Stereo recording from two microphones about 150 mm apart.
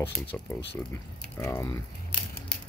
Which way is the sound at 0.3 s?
10° left (ahead or behind).